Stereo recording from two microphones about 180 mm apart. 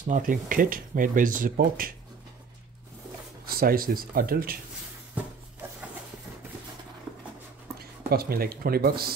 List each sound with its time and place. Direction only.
0.0 s speech: 50° right (ahead or behind)
3.4 s speech: 55° right (ahead or behind)
7.8 s speech: 60° right (ahead or behind)